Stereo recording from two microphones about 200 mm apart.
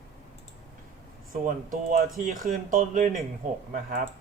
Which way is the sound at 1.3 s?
45° right (ahead or behind).